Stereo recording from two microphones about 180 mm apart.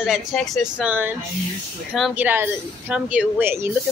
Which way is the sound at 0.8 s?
10° right (ahead or behind).